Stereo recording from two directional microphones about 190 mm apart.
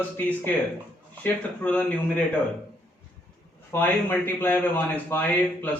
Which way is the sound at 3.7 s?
10° left (ahead or behind).